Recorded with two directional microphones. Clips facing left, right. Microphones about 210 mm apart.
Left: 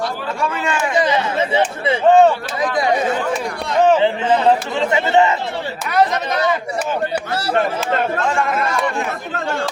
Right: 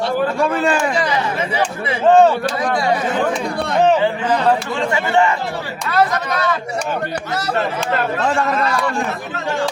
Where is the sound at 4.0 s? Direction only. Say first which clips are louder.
Left 2 dB; 25° left (ahead or behind).